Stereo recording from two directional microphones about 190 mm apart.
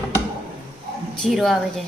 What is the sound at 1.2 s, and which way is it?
Speech, centre (ahead or behind).